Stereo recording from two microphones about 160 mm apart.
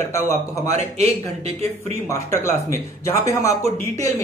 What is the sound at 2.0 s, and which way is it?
Speech, 15° left (ahead or behind).